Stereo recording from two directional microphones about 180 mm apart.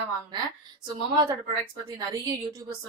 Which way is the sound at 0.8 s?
20° right (ahead or behind).